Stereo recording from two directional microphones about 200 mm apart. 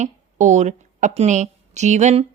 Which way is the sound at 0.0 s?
35° right (ahead or behind).